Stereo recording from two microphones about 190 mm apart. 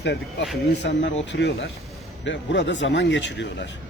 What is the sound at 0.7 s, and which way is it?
A man's voice, 65° left (ahead or behind).